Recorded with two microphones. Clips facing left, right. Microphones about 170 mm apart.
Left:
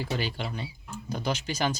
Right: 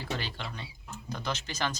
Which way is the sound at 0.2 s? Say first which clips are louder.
Left 6 dB; 10° left (ahead or behind).